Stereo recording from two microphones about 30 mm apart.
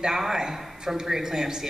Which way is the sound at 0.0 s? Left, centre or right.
Centre.